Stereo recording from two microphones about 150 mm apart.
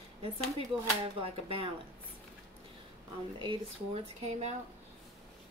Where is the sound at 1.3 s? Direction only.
40° right (ahead or behind).